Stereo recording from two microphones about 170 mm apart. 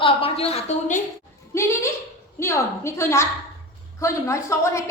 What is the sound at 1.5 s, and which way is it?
A woman's voice, 15° left (ahead or behind).